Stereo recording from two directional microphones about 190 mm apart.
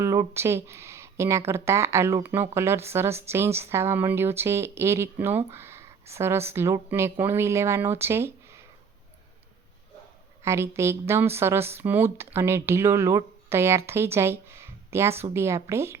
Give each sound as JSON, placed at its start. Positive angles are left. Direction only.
{"t": 0.0, "sound": "speech", "side_deg": -15}
{"t": 10.4, "sound": "speech", "side_deg": -15}